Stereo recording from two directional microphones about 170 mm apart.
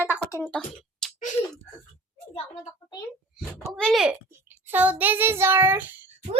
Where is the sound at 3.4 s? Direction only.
Centre (ahead or behind).